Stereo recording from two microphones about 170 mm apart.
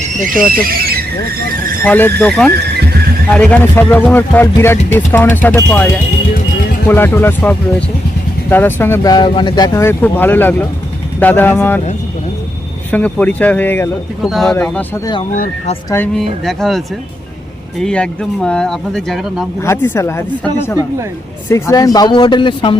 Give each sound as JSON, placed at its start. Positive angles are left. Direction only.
{"t": 0.3, "sound": "speech", "side_deg": -55}
{"t": 1.8, "sound": "speech", "side_deg": 10}
{"t": 9.1, "sound": "speech", "side_deg": 25}
{"t": 12.9, "sound": "speech", "side_deg": 10}
{"t": 14.3, "sound": "speech", "side_deg": 0}
{"t": 15.3, "sound": "speech", "side_deg": 45}
{"t": 16.1, "sound": "speech", "side_deg": 0}
{"t": 19.6, "sound": "speech", "side_deg": 15}
{"t": 21.5, "sound": "speech", "side_deg": 20}